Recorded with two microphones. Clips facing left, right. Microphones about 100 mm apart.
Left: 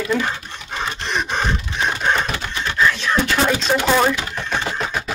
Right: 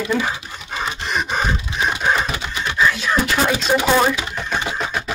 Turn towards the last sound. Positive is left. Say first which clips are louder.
# even
turn(degrees=0)  # may be behind; listen again after turning